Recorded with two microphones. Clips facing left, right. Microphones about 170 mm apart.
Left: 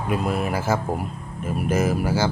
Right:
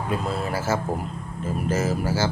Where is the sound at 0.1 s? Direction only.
15° left (ahead or behind).